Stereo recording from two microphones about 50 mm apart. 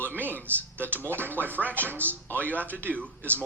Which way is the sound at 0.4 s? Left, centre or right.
Right.